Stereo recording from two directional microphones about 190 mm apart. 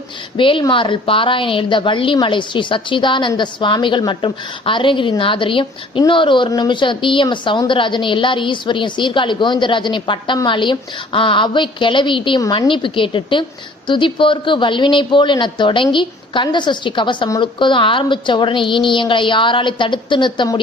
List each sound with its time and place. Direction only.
0.3 s a woman's voice: 25° left (ahead or behind)